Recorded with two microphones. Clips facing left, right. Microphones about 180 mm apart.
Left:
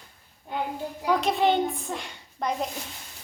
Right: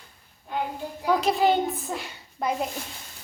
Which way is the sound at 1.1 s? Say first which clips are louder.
Right 1 dB; centre (ahead or behind).